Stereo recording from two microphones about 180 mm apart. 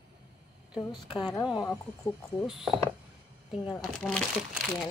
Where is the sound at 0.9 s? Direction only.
25° left (ahead or behind).